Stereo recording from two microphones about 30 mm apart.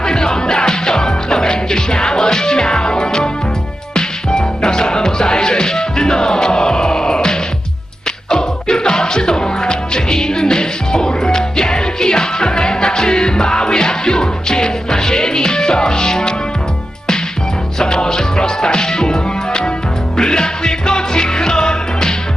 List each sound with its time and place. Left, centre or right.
0.0 s music: left
17.7 s music: left